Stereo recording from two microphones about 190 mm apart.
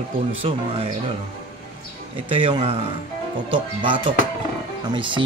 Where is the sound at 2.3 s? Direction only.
25° right (ahead or behind).